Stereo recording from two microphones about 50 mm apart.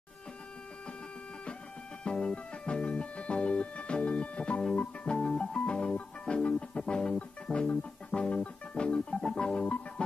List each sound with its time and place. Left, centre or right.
2.0 s music: centre